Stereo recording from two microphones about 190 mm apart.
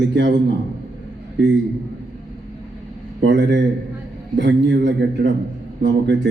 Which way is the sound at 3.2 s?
70° right (ahead or behind).